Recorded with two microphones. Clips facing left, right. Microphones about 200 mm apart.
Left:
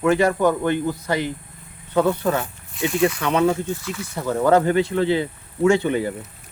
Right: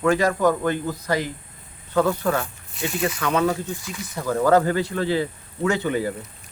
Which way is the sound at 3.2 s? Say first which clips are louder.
Left 3 dB; 25° left (ahead or behind).